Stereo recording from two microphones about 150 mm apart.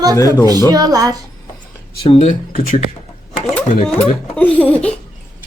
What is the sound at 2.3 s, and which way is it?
Speech, 65° left (ahead or behind).